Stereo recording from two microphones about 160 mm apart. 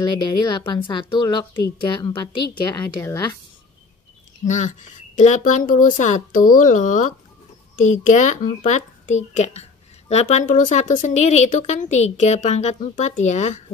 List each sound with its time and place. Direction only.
0.0 s a woman's voice: 30° left (ahead or behind)
3.0 s a woman's voice: 20° left (ahead or behind)
4.5 s speech: 50° left (ahead or behind)